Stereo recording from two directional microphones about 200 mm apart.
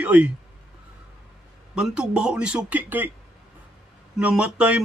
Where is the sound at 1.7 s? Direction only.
5° right (ahead or behind).